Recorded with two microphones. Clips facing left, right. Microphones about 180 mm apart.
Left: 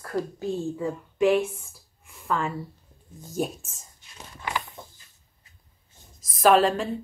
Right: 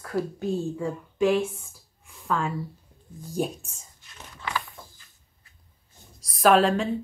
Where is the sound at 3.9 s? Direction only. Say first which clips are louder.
Left 1 dB; 20° left (ahead or behind).